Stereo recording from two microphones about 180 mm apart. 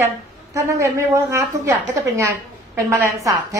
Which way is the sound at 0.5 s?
15° right (ahead or behind).